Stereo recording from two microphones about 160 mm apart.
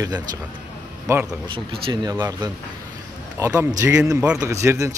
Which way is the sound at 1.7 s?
30° right (ahead or behind).